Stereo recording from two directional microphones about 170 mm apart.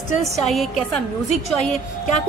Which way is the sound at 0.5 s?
Centre (ahead or behind).